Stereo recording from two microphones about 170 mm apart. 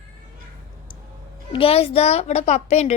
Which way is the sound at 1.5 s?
35° left (ahead or behind).